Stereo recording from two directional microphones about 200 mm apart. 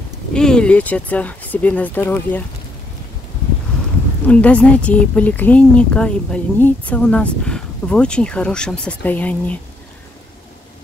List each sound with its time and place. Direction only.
0.3 s speech: 5° left (ahead or behind)
4.3 s speech: 5° left (ahead or behind)